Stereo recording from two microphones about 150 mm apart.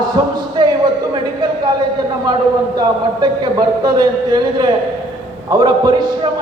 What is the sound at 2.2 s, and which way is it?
Speech, 25° right (ahead or behind).